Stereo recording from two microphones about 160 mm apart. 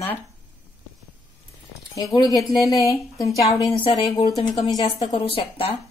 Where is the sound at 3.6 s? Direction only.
35° left (ahead or behind).